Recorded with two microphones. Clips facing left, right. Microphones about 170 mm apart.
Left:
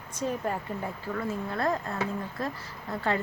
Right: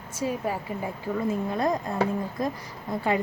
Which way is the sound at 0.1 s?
5° right (ahead or behind).